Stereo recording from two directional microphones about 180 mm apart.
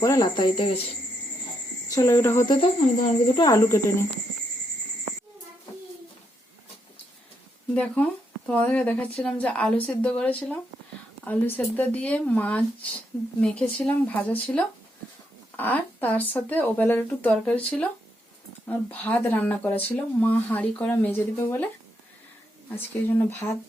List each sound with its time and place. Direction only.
0.0 s speech: 20° left (ahead or behind)
1.9 s speech: 20° left (ahead or behind)
2.5 s speech: 30° left (ahead or behind)
8.4 s speech: 5° left (ahead or behind)
22.7 s speech: 10° left (ahead or behind)